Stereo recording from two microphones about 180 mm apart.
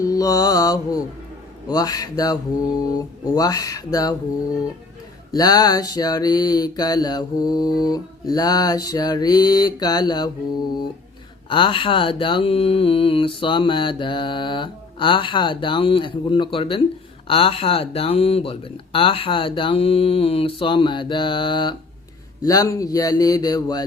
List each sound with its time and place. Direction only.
0.0 s mantra: 20° left (ahead or behind)
5.3 s mantra: 20° left (ahead or behind)
11.4 s mantra: 30° left (ahead or behind)
17.2 s speech: 30° left (ahead or behind)
20.6 s mantra: 30° left (ahead or behind)